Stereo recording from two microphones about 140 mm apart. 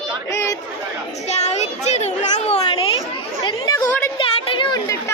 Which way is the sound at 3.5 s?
25° left (ahead or behind).